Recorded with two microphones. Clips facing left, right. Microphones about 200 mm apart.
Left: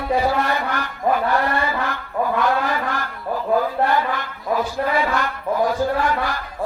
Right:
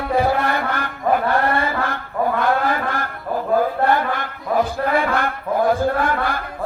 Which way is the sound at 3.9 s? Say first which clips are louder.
Even; 55° right (ahead or behind).